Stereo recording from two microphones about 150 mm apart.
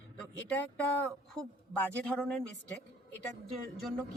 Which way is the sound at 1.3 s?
5° left (ahead or behind).